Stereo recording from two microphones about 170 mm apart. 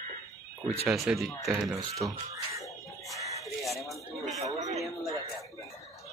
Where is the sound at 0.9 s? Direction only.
Centre (ahead or behind).